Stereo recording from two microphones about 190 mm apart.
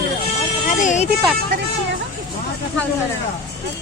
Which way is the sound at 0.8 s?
40° left (ahead or behind).